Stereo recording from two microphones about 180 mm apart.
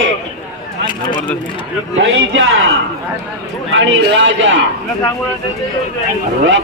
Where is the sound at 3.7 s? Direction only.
90° right.